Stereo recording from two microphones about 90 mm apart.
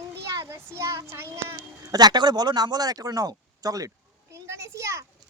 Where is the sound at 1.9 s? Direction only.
50° right (ahead or behind).